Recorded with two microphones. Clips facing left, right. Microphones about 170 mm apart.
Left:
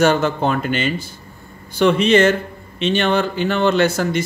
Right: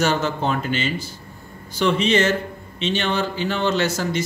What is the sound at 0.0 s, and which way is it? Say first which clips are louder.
Speech: left 5 dB; 55° left (ahead or behind).